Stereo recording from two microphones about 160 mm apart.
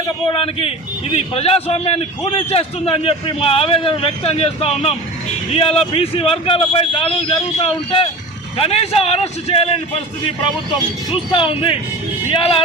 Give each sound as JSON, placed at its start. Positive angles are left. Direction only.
{"t": 0.3, "sound": "a man's voice", "side_deg": 35}
{"t": 11.3, "sound": "a man's voice", "side_deg": 35}